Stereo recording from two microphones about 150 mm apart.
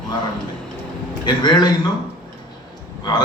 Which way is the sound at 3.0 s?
30° left (ahead or behind).